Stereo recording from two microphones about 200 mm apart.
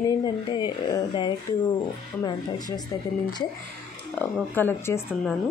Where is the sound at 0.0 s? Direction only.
20° left (ahead or behind).